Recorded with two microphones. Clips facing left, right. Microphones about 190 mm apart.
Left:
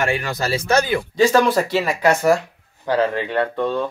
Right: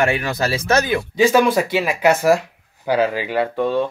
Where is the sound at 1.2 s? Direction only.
Centre (ahead or behind).